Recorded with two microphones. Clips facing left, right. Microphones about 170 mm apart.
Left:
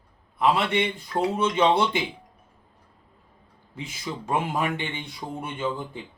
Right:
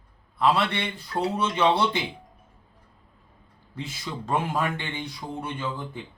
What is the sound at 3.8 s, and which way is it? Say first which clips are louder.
Speech: left 1 dB; 15° left (ahead or behind).